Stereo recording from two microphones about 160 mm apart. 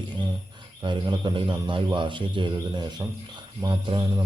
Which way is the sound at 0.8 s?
30° right (ahead or behind).